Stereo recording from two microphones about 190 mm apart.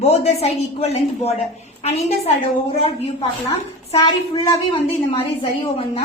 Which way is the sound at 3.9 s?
25° left (ahead or behind).